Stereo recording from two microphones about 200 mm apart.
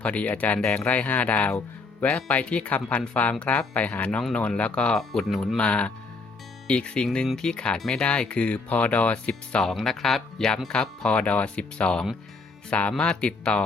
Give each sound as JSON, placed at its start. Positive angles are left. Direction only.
{"t": 0.0, "sound": "speech", "side_deg": 5}